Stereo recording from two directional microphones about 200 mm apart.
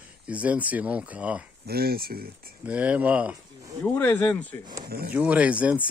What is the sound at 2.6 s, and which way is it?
Speech, 5° right (ahead or behind).